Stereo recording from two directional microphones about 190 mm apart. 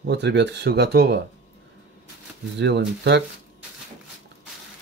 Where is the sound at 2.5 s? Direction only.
70° right (ahead or behind).